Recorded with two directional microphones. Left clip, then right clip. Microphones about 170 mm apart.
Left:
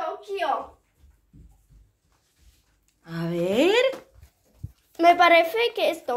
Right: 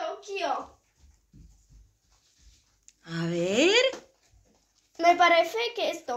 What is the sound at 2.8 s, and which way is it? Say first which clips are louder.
Speech: left 1 dB; 5° left (ahead or behind).